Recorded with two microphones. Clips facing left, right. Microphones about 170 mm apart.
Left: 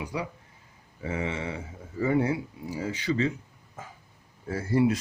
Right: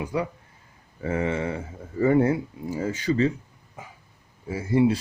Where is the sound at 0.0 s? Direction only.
55° right (ahead or behind).